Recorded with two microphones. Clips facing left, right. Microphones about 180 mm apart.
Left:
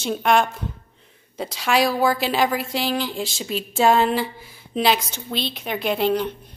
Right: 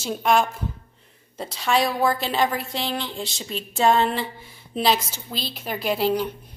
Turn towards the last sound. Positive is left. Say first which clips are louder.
# left 1 dB
turn(degrees=-5)  # may be behind; listen again after turning